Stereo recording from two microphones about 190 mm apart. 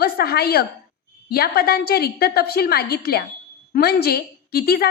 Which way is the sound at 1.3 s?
55° left (ahead or behind).